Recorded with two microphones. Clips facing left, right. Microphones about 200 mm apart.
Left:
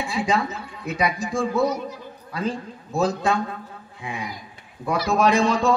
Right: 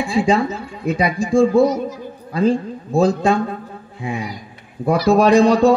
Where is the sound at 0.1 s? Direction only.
30° right (ahead or behind).